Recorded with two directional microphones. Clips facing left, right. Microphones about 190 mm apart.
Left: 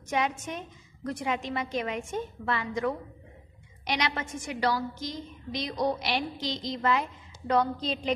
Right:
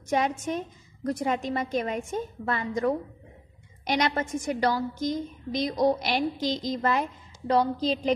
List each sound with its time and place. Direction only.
0.1 s a woman's voice: 40° right (ahead or behind)